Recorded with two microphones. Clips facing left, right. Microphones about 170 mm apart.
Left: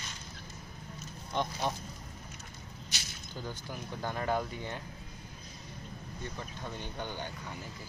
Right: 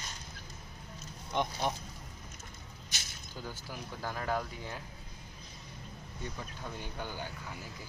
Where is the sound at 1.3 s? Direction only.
15° right (ahead or behind).